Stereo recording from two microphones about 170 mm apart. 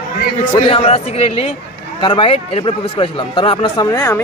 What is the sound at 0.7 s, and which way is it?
Speech, 35° left (ahead or behind).